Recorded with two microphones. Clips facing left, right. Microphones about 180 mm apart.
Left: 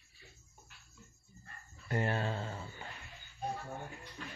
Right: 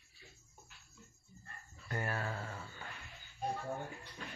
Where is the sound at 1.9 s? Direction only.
25° left (ahead or behind).